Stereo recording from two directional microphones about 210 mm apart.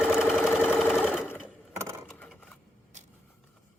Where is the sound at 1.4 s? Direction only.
10° right (ahead or behind).